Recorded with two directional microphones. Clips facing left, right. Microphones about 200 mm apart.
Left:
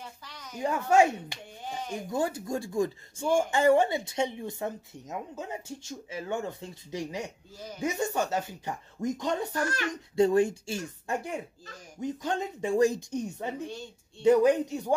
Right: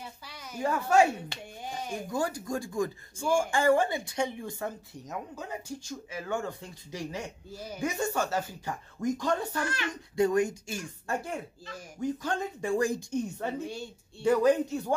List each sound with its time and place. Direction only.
0.2 s a sound: 10° right (ahead or behind)
0.6 s speech: 20° left (ahead or behind)
1.6 s a sound: 10° right (ahead or behind)
2.0 s speech: 25° left (ahead or behind)
7.5 s speech: 10° right (ahead or behind)
7.8 s speech: 20° left (ahead or behind)